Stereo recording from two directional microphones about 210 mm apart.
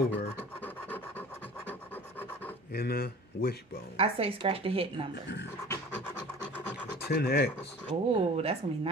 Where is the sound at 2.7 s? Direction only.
45° left (ahead or behind).